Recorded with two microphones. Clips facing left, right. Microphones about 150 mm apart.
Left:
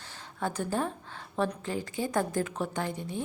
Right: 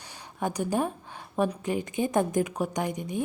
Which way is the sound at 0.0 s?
15° right (ahead or behind).